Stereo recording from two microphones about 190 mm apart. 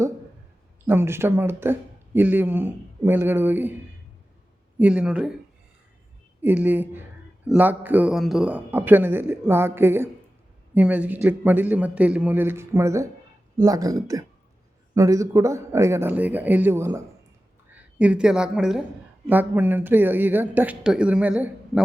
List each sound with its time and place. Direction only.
0.9 s speech: 10° right (ahead or behind)
4.8 s a woman's voice: 5° right (ahead or behind)
6.4 s a woman's voice: 10° right (ahead or behind)